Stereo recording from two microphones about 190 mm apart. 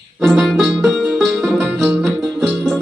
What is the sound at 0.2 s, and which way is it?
Music, centre (ahead or behind).